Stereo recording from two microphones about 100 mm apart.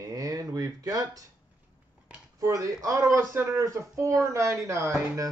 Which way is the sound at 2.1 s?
15° right (ahead or behind).